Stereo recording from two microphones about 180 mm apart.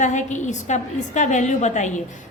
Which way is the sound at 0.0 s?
40° left (ahead or behind).